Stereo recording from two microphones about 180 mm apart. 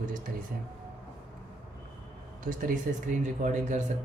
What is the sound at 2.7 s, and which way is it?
Speech, 45° right (ahead or behind).